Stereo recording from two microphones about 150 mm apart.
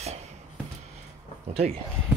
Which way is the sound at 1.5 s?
40° right (ahead or behind).